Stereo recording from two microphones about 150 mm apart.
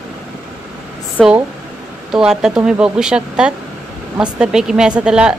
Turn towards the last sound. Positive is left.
turn(degrees=-5)  # may be behind; listen again after turning